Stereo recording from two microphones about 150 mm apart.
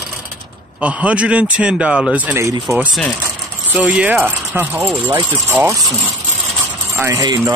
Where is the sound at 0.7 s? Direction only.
10° right (ahead or behind).